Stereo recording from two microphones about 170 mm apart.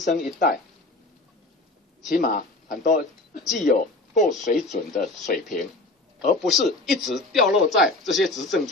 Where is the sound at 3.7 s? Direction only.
50° left (ahead or behind).